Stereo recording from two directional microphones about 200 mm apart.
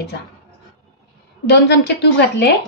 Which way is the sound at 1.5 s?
60° left (ahead or behind).